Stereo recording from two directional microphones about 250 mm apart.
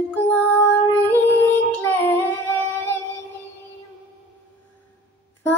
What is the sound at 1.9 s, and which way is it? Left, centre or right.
Humming, centre.